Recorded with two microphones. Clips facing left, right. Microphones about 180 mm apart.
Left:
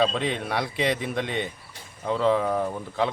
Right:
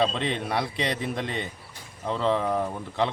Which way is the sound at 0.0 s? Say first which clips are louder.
Left 1 dB; centre (ahead or behind).